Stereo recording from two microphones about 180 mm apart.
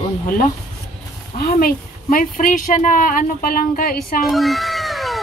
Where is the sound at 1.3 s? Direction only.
55° left (ahead or behind).